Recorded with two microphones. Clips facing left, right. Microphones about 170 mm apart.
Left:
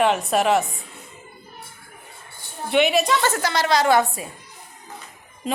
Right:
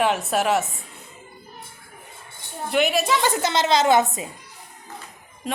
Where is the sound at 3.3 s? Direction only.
20° right (ahead or behind).